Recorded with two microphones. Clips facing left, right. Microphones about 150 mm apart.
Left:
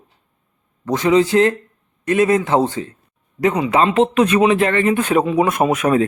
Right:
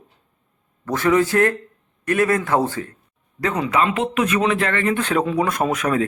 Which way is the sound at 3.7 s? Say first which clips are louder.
Left 5 dB; 30° left (ahead or behind).